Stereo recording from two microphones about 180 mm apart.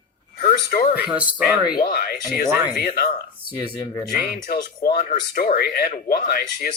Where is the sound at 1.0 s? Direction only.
5° right (ahead or behind).